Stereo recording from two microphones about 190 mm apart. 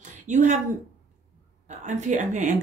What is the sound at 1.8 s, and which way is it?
Speech, 40° right (ahead or behind).